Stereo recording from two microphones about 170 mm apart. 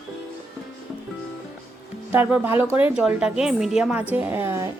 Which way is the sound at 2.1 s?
10° right (ahead or behind).